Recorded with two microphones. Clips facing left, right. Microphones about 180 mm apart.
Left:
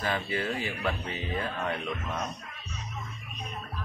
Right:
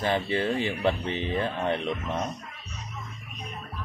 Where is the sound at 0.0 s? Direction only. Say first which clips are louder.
Right 5 dB; 25° right (ahead or behind).